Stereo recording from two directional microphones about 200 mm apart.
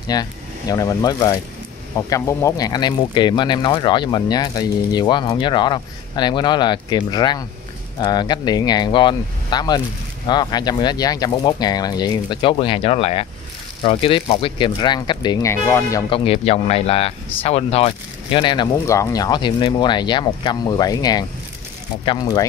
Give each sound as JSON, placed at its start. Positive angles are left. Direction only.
{"t": 0.1, "sound": "speech", "side_deg": 20}
{"t": 16.3, "sound": "speech", "side_deg": 30}